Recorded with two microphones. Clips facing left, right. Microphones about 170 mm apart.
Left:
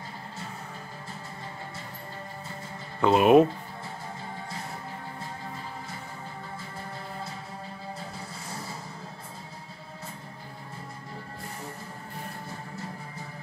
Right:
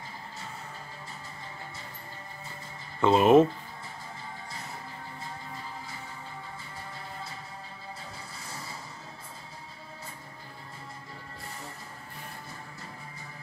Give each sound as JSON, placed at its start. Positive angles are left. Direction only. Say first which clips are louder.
{"t": 3.0, "sound": "speech", "louder": "left 1 dB", "side_deg": 10}